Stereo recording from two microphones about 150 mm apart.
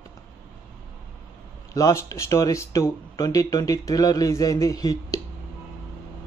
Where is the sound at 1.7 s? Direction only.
20° left (ahead or behind).